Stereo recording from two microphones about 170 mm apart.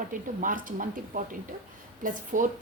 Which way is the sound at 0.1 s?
50° right (ahead or behind).